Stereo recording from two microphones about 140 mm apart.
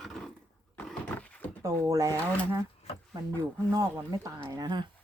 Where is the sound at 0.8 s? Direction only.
10° left (ahead or behind).